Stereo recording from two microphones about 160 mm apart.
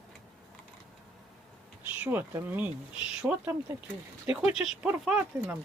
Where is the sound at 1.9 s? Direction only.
10° right (ahead or behind).